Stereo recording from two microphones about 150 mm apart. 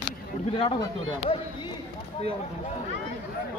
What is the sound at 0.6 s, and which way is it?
Speech, 35° left (ahead or behind).